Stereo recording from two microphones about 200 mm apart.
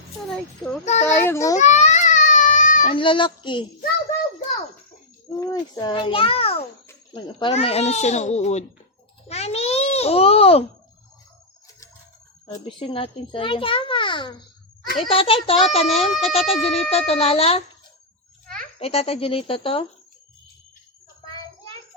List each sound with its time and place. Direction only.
1.0 s a child's voice: 10° left (ahead or behind)
1.5 s baby cry: 35° left (ahead or behind)
2.9 s a child's voice: 25° left (ahead or behind)
5.4 s a child's voice: 15° left (ahead or behind); by 8.6 s 35° left (ahead or behind)
9.3 s babbling: 30° left (ahead or behind)
12.6 s a child's voice: 25° left (ahead or behind)
18.8 s a child's voice: 30° left (ahead or behind)